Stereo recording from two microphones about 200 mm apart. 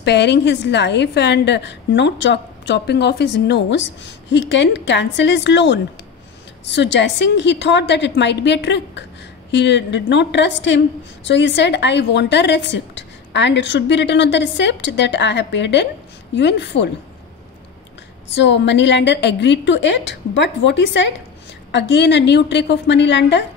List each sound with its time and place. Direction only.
0.0 s a woman's voice: 60° left (ahead or behind)
18.3 s a woman's voice: 60° left (ahead or behind)